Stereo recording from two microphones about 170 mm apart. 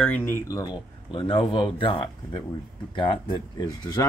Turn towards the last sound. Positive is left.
turn(degrees=25)  # may be behind; listen again after turning